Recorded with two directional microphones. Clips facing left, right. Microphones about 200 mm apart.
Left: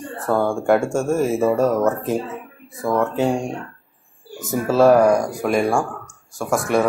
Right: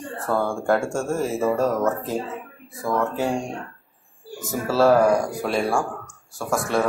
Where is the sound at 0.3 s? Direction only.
20° left (ahead or behind).